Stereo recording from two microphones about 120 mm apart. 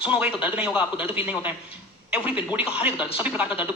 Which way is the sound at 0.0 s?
10° right (ahead or behind).